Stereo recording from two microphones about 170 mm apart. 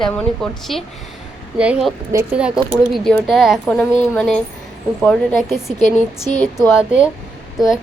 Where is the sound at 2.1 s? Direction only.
20° right (ahead or behind).